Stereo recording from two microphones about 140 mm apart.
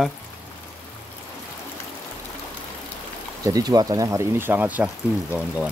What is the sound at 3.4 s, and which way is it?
Speech, 25° right (ahead or behind).